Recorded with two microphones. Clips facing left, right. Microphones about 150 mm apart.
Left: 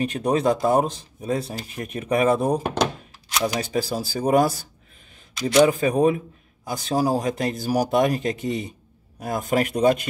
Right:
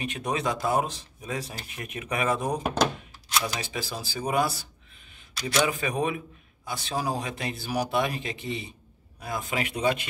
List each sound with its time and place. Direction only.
0.0 s a man's voice: 35° left (ahead or behind)
5.3 s a man's voice: 20° left (ahead or behind)
5.7 s a man's voice: 35° left (ahead or behind)